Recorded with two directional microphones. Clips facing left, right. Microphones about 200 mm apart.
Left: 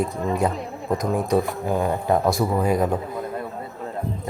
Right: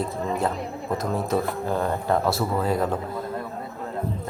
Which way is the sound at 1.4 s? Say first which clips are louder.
Left 2 dB; 10° left (ahead or behind).